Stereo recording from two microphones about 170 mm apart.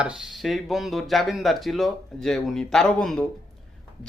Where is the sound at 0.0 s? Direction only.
5° right (ahead or behind).